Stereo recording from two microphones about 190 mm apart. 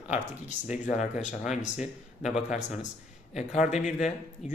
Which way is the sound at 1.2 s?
40° left (ahead or behind).